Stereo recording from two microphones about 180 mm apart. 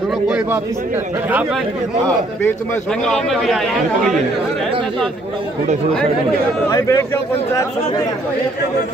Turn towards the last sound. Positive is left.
turn(degrees=20)  # may be behind; listen again after turning